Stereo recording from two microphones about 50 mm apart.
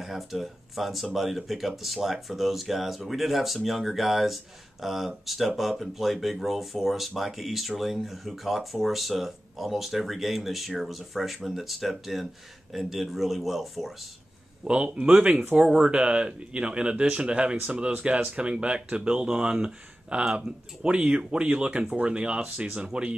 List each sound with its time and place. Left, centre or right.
0.0 s speech: centre
14.7 s speech: centre